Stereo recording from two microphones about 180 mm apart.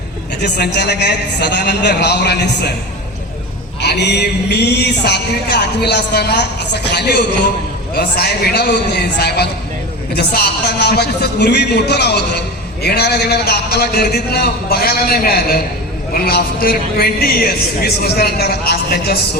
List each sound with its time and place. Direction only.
0.4 s speech: 65° left (ahead or behind)
3.8 s a man's voice: 70° left (ahead or behind)